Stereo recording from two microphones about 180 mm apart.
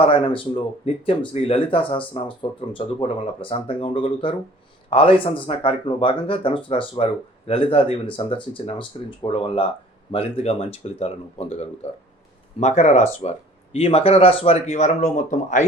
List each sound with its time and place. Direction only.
0.0 s speech: 30° left (ahead or behind)